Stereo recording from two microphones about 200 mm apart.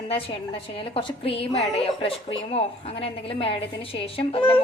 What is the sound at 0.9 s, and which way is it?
A woman's voice, 30° left (ahead or behind).